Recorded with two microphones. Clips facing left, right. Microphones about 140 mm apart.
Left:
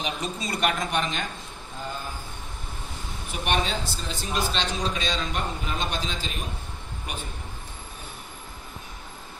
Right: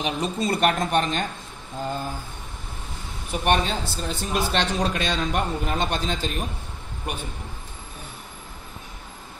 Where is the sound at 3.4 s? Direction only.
55° right (ahead or behind).